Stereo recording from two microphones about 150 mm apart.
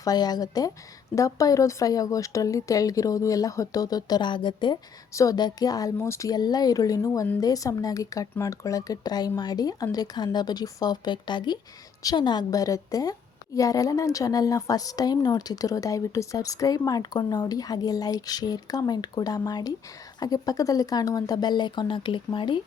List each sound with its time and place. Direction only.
0.0 s a woman's voice: 25° left (ahead or behind)